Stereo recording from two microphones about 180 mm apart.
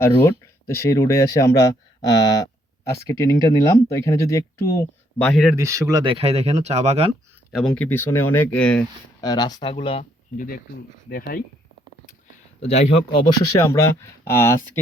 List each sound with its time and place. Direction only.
0.0 s speech: 15° left (ahead or behind)
5.1 s speech: 5° left (ahead or behind)
5.5 s speech: 15° right (ahead or behind); by 7.1 s 35° right (ahead or behind)
7.8 s speech: 10° left (ahead or behind)
9.2 s speech: 20° left (ahead or behind)
10.3 s speech: 50° left (ahead or behind)
12.5 s speech: 35° left (ahead or behind)
13.1 s speech: 25° left (ahead or behind)